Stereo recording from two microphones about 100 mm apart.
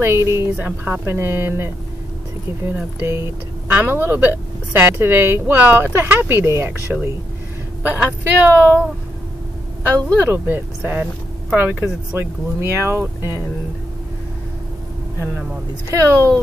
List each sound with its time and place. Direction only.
0.0 s a woman's voice: 25° right (ahead or behind)
0.6 s a woman's voice: 15° right (ahead or behind)
10.2 s a woman's voice: 20° right (ahead or behind)
15.9 s speech: 30° right (ahead or behind)